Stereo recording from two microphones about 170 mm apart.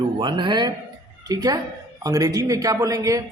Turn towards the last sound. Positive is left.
turn(degrees=-20)  # may be behind; listen again after turning